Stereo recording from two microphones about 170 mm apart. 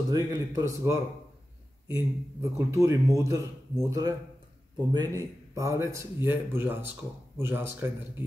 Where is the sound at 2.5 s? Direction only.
20° right (ahead or behind).